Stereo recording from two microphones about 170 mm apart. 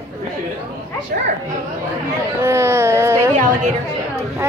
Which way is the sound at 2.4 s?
15° right (ahead or behind).